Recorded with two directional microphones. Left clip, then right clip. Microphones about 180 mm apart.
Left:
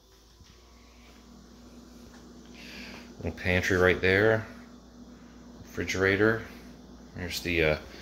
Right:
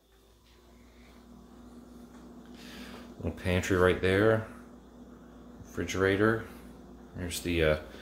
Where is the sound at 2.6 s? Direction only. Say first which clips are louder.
Left 3 dB; 25° right (ahead or behind).